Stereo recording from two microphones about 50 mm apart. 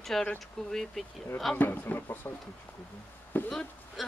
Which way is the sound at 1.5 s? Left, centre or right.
Left.